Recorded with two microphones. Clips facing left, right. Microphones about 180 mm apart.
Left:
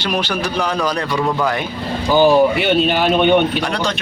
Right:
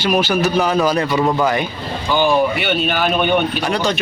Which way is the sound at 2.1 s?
35° left (ahead or behind).